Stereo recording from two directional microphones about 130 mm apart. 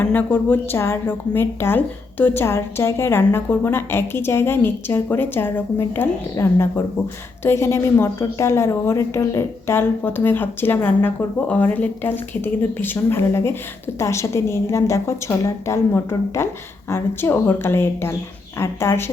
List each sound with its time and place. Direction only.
0.0 s a woman's voice: 15° left (ahead or behind)